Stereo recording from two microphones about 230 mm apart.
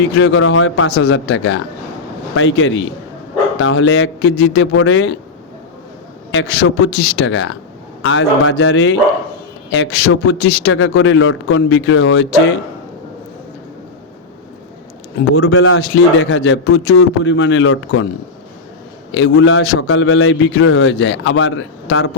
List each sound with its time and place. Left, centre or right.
0.2 s a man's voice: left
6.3 s a man's voice: left
15.2 s a man's voice: left
19.1 s a man's voice: left